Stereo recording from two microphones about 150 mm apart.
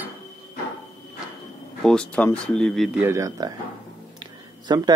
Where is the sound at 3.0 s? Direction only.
20° right (ahead or behind).